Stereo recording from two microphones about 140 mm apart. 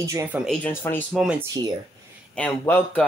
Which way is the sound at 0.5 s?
15° left (ahead or behind).